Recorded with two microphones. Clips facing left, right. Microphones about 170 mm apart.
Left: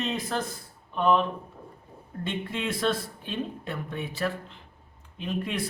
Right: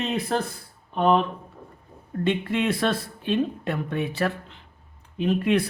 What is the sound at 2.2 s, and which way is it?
Speech, 70° right (ahead or behind).